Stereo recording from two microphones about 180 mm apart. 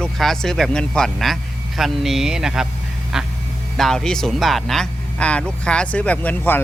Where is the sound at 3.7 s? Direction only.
Centre (ahead or behind).